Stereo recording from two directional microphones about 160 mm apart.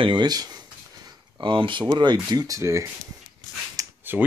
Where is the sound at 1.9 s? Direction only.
25° right (ahead or behind).